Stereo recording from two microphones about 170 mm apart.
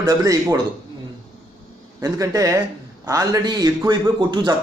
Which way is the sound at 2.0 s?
20° right (ahead or behind).